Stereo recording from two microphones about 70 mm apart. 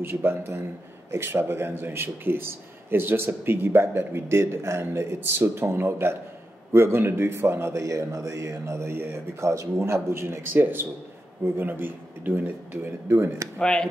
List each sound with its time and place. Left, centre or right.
0.0 s a man's voice: right
13.6 s speech: centre